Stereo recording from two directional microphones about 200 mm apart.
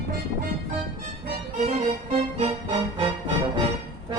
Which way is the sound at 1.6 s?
30° right (ahead or behind).